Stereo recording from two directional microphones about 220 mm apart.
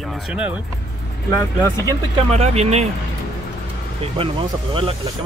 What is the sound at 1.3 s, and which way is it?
Speech, 15° left (ahead or behind).